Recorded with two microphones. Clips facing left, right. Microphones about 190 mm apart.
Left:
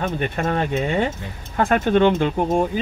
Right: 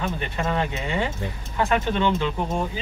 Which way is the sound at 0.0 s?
50° left (ahead or behind).